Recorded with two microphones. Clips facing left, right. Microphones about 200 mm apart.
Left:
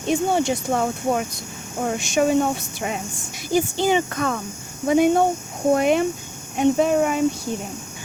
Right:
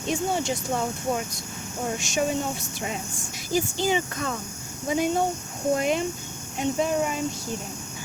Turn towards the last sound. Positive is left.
turn(degrees=65)  # may be behind; listen again after turning